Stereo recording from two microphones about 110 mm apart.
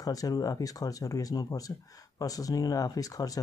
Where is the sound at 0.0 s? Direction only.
35° left (ahead or behind).